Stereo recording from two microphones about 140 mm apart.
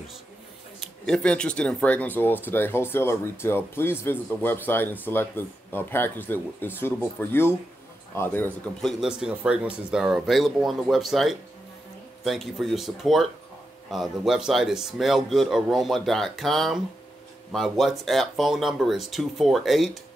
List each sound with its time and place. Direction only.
0.7 s speech: 5° left (ahead or behind)
8.8 s a man's voice: 5° right (ahead or behind)